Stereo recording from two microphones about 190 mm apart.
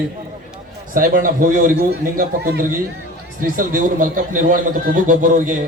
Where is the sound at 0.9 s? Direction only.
45° right (ahead or behind).